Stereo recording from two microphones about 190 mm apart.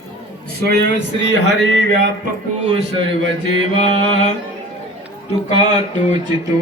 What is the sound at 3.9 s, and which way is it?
Music, 30° right (ahead or behind).